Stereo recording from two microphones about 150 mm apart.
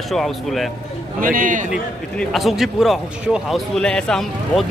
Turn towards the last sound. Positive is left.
turn(degrees=5)  # may be behind; listen again after turning